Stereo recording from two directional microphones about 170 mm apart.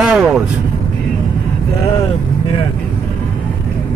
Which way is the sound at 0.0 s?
5° right (ahead or behind).